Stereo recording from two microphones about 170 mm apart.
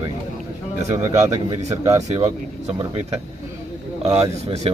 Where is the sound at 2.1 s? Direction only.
35° right (ahead or behind).